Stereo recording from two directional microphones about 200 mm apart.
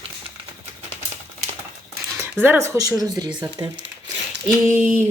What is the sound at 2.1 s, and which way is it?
Speech, 10° right (ahead or behind).